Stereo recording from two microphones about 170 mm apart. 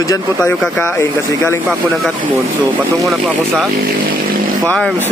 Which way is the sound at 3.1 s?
Centre (ahead or behind).